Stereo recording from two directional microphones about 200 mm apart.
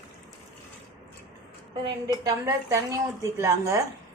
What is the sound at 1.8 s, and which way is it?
A woman's voice, 20° right (ahead or behind).